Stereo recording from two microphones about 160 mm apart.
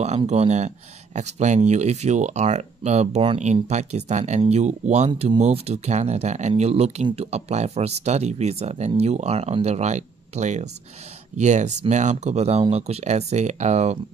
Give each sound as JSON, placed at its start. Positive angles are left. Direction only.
{"t": 0.3, "sound": "speech", "side_deg": -45}